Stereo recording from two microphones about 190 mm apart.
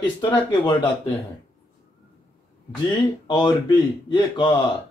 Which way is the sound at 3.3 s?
25° left (ahead or behind).